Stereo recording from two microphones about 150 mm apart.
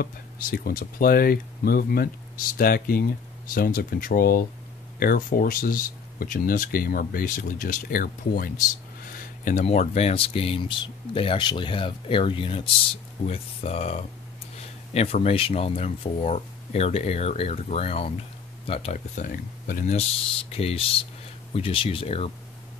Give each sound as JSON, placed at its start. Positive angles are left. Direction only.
{"t": 0.0, "sound": "speech", "side_deg": 75}
{"t": 2.5, "sound": "speech", "side_deg": 75}
{"t": 9.4, "sound": "speech", "side_deg": 55}
{"t": 18.9, "sound": "speech", "side_deg": 60}
{"t": 20.5, "sound": "speech", "side_deg": 40}